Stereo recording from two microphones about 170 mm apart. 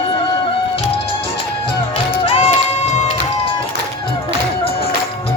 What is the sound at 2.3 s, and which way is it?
Run, 35° left (ahead or behind).